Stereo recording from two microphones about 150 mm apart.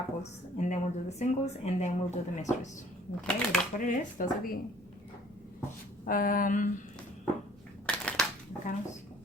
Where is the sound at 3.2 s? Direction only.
5° left (ahead or behind).